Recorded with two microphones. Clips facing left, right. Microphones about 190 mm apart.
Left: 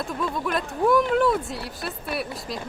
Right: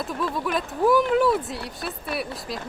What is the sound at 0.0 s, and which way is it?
Speech, centre (ahead or behind).